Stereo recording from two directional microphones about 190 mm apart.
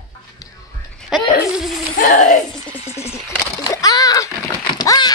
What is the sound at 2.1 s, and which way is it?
Speech, 40° left (ahead or behind).